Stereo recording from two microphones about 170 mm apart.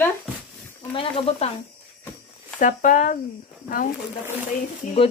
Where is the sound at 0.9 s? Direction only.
30° left (ahead or behind).